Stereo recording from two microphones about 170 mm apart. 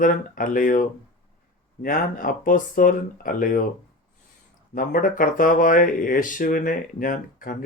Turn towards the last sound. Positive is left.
turn(degrees=55)  # may be behind; listen again after turning